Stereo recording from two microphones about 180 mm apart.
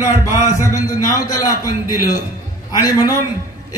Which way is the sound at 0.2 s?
15° left (ahead or behind).